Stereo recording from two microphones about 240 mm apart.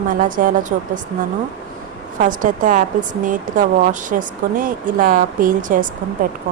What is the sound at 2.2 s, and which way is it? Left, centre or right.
Speech, right.